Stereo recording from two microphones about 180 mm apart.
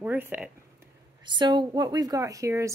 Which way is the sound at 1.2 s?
25° right (ahead or behind).